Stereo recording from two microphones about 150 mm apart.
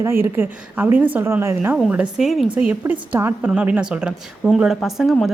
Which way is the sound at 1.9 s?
5° right (ahead or behind).